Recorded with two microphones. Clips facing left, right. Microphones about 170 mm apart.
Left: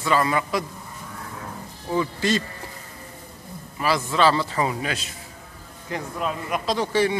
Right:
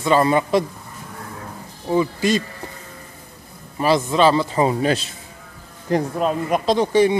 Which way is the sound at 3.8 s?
20° right (ahead or behind).